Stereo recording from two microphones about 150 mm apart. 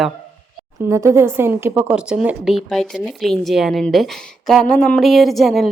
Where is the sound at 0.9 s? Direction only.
20° right (ahead or behind).